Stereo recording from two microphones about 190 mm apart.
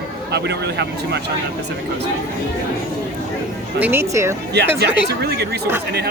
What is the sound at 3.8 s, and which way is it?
Speech, 10° right (ahead or behind).